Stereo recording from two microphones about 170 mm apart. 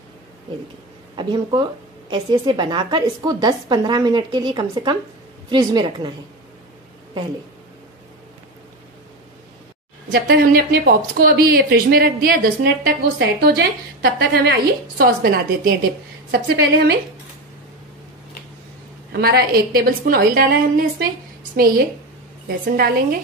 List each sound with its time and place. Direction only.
1.1 s a woman's voice: 25° right (ahead or behind)
10.1 s a woman's voice: 70° right (ahead or behind)
16.3 s a woman's voice: 70° right (ahead or behind)
19.1 s a woman's voice: 65° right (ahead or behind)